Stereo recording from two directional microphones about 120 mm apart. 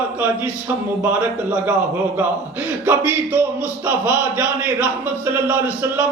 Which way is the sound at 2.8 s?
15° right (ahead or behind).